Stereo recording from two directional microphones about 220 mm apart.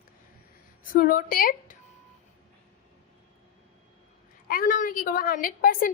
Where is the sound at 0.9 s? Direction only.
40° left (ahead or behind).